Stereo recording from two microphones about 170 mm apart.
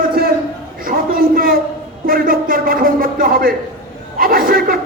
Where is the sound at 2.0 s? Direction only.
60° right (ahead or behind).